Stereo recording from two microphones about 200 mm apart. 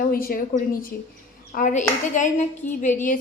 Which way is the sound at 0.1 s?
45° left (ahead or behind).